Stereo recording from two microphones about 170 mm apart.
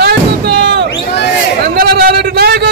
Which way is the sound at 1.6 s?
65° right (ahead or behind).